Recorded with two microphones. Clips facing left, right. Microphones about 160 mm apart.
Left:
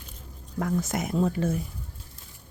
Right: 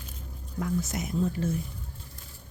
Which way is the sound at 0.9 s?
55° left (ahead or behind).